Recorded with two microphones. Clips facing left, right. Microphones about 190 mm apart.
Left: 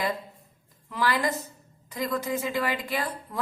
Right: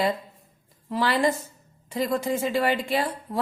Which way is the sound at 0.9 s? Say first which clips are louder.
Right 4 dB; 30° right (ahead or behind).